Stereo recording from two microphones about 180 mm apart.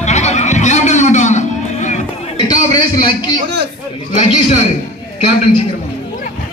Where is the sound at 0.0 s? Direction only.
40° left (ahead or behind).